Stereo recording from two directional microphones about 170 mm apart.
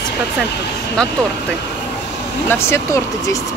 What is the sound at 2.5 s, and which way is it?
Speech, 15° left (ahead or behind).